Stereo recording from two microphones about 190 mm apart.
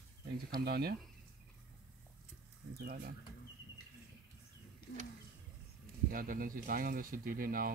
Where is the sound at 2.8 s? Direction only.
55° right (ahead or behind).